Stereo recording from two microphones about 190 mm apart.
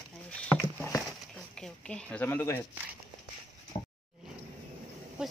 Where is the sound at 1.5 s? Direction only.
5° left (ahead or behind).